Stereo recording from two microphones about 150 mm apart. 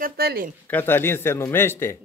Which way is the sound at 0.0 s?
80° right.